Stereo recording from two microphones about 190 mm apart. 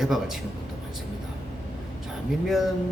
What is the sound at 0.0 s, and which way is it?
Speech, centre (ahead or behind).